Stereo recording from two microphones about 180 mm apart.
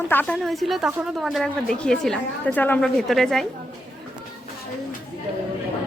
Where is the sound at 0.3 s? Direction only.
Centre (ahead or behind).